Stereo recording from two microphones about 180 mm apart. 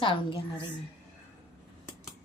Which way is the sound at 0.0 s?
30° left (ahead or behind).